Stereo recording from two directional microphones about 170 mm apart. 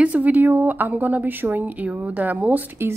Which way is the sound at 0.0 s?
10° right (ahead or behind).